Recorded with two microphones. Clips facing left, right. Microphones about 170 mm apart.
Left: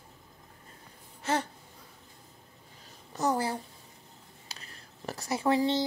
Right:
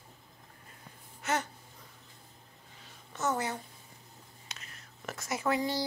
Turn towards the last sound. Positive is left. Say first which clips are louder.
# left 5 dB
turn(degrees=30)  # may be behind; listen again after turning